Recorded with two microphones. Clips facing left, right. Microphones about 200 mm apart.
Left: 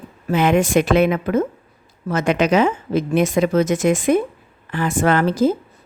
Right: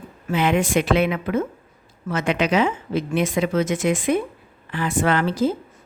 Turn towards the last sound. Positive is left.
turn(degrees=45)  # may be behind; listen again after turning